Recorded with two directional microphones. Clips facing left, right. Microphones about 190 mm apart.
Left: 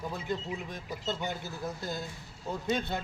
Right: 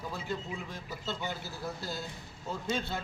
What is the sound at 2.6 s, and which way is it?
Speech, 20° left (ahead or behind).